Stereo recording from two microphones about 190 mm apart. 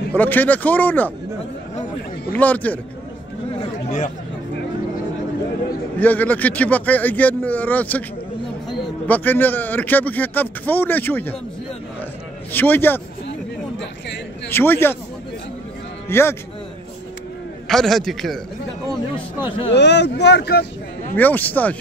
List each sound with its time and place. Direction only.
0.1 s a man's voice: 10° left (ahead or behind)
2.3 s a man's voice: 10° left (ahead or behind)
5.9 s a man's voice: 10° left (ahead or behind)
9.0 s a man's voice: 10° left (ahead or behind)
12.5 s a man's voice: 10° left (ahead or behind)
13.7 s a sound: 70° left (ahead or behind)
14.5 s a man's voice: 10° left (ahead or behind)
16.1 s a man's voice: 15° left (ahead or behind)
17.6 s a man's voice: centre (ahead or behind)
19.7 s speech: 65° left (ahead or behind)
21.1 s a man's voice: 10° left (ahead or behind)